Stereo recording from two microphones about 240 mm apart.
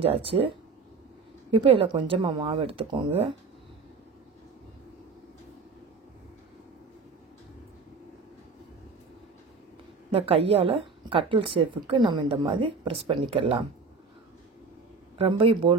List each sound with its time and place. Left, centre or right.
0.0 s speech: right
1.5 s speech: right
10.1 s speech: right
15.1 s speech: right